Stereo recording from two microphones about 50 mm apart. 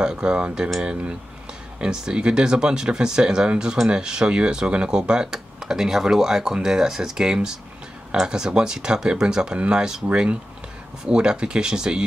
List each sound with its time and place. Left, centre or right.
0.0 s speech: centre
11.1 s speech: centre